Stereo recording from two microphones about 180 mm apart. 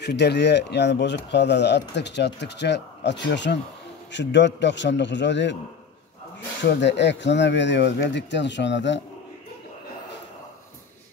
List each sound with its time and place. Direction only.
0.0 s a man's voice: 70° left (ahead or behind)
6.6 s speech: 75° left (ahead or behind)